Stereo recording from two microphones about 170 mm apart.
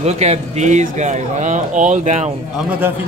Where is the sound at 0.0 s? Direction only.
40° right (ahead or behind).